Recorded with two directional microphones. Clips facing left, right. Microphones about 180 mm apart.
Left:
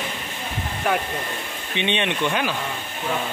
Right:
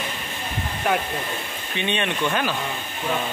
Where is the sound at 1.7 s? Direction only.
20° left (ahead or behind).